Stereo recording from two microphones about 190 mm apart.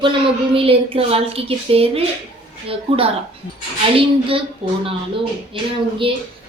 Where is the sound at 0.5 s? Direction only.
30° right (ahead or behind).